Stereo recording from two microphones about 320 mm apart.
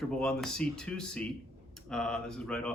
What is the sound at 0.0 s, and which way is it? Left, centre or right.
Speech, centre.